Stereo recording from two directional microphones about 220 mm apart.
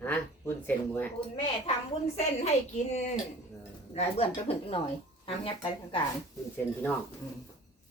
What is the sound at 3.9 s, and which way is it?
A woman's voice, 25° left (ahead or behind).